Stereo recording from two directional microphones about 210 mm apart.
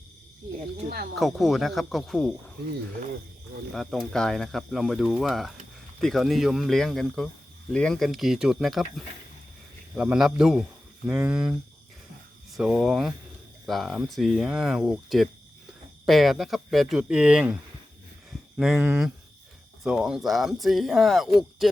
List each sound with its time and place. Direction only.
1.1 s speech: centre (ahead or behind)
3.8 s speech: centre (ahead or behind)
12.5 s speech: 5° right (ahead or behind)